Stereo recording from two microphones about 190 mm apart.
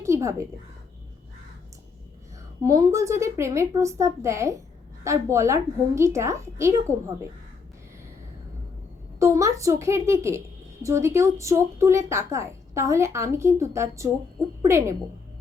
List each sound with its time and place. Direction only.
0.0 s a sound: 15° right (ahead or behind)
2.6 s a woman's voice: 20° right (ahead or behind)
9.1 s a woman's voice: 15° right (ahead or behind)